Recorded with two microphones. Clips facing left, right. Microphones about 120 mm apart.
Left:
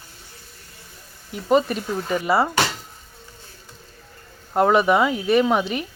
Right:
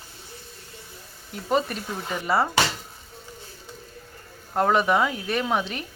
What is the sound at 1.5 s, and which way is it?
Speech, 5° left (ahead or behind).